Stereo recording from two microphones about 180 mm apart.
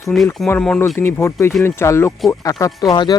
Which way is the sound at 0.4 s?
10° left (ahead or behind).